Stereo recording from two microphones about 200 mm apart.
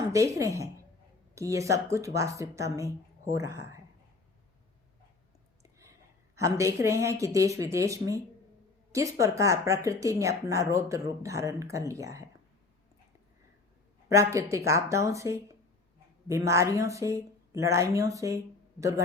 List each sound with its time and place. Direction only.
0.1 s speech: 15° right (ahead or behind)
6.3 s speech: 15° right (ahead or behind)
14.1 s speech: 15° right (ahead or behind)